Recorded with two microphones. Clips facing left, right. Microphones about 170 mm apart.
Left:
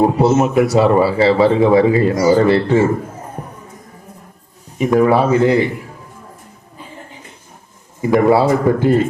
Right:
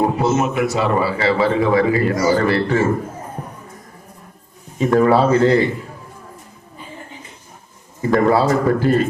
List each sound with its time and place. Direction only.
0.0 s a man's voice: 35° left (ahead or behind)
4.8 s a man's voice: 15° left (ahead or behind)
8.0 s a man's voice: 15° left (ahead or behind)